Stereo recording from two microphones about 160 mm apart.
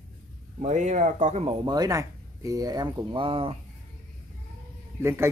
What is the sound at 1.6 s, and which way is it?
Speech, 25° right (ahead or behind).